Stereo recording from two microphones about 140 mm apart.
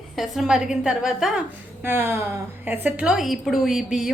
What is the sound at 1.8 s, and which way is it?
A woman's voice, 15° right (ahead or behind).